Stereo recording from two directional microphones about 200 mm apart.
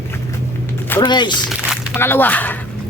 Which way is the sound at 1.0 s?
20° left (ahead or behind).